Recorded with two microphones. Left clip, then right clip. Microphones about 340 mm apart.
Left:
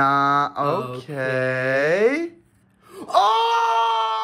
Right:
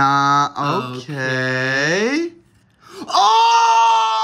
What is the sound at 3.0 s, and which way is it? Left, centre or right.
Wail, centre.